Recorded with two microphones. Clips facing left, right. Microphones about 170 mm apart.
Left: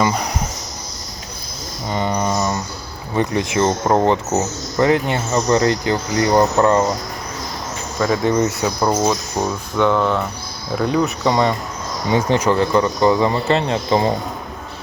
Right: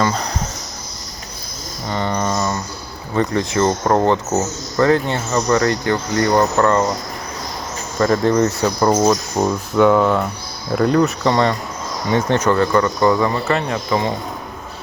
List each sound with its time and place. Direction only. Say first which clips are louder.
0.0 s speech: left 1 dB; 10° left (ahead or behind)
1.9 s a sound: left 1 dB; 15° left (ahead or behind)
3.2 s speech: right 1 dB; 15° left (ahead or behind)
7.9 s speech: right 2 dB; 5° left (ahead or behind); by 14.1 s 25° left (ahead or behind)